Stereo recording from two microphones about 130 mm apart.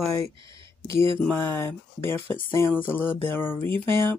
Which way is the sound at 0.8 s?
20° left (ahead or behind).